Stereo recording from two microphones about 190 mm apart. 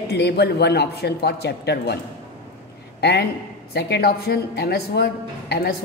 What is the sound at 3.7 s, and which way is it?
A woman's voice, 60° left (ahead or behind).